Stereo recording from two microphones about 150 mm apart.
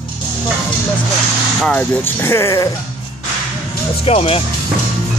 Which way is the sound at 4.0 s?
40° left (ahead or behind).